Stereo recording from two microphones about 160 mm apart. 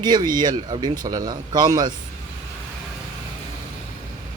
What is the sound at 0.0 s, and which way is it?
A man's voice, 25° right (ahead or behind).